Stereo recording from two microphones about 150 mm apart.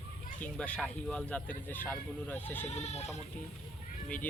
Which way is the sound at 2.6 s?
45° left (ahead or behind).